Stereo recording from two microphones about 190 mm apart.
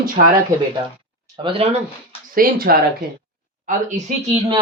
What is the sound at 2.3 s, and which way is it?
Speech, 50° right (ahead or behind).